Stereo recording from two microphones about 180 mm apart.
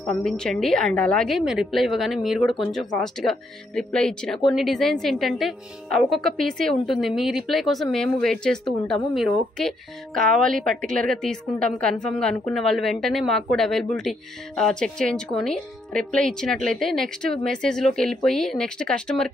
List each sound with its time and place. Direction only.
0.0 s a woman's voice: 5° left (ahead or behind)